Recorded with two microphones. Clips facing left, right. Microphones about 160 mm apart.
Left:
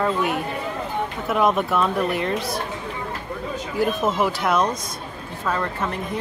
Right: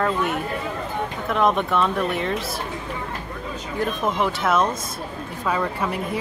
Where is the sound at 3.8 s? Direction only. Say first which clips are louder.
Left 2 dB; 5° left (ahead or behind).